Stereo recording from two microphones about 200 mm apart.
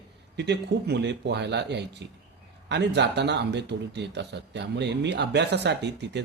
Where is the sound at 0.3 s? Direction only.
60° right (ahead or behind).